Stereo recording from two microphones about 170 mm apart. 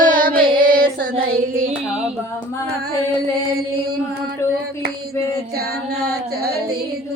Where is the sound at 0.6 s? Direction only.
55° right (ahead or behind).